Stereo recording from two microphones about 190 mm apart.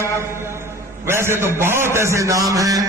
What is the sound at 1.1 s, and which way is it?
A man's voice, 15° right (ahead or behind).